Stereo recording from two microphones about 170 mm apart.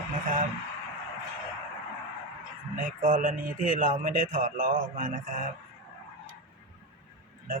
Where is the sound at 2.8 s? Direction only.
55° right (ahead or behind).